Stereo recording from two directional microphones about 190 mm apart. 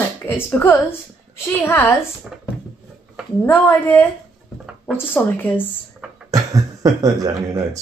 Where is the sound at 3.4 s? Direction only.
10° left (ahead or behind).